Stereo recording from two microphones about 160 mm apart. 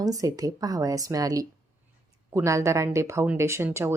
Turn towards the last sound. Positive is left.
turn(degrees=-15)  # may be behind; listen again after turning